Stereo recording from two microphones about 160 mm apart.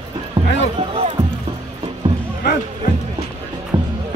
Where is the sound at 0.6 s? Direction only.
40° right (ahead or behind).